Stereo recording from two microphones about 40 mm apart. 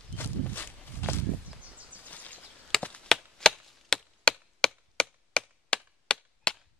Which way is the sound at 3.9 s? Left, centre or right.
Left.